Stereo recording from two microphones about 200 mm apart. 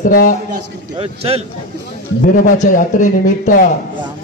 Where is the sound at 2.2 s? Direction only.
40° left (ahead or behind).